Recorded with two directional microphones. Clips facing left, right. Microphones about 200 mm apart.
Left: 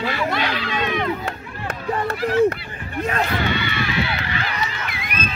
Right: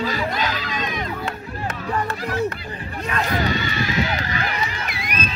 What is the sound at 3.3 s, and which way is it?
Run, 40° right (ahead or behind).